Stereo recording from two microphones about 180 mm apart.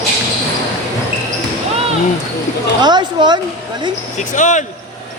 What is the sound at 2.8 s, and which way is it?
Speech, 25° right (ahead or behind).